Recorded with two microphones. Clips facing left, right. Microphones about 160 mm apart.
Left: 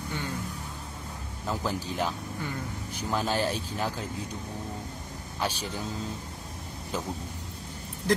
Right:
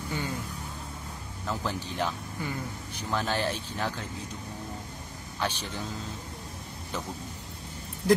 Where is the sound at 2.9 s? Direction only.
10° left (ahead or behind).